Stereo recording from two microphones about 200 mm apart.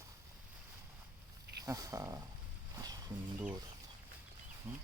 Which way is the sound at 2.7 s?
20° right (ahead or behind).